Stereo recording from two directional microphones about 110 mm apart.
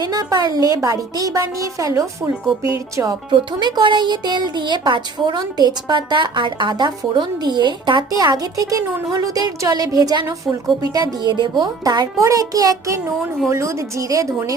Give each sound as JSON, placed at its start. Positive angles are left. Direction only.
{"t": 0.0, "sound": "a woman's voice", "side_deg": -35}
{"t": 3.6, "sound": "a woman's voice", "side_deg": -40}